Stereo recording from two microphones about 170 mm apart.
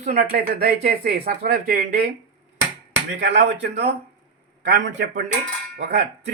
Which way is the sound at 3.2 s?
90° right.